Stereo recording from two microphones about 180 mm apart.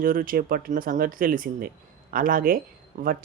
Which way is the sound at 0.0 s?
50° right (ahead or behind).